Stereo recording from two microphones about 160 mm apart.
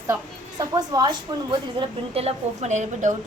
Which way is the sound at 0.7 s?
25° right (ahead or behind).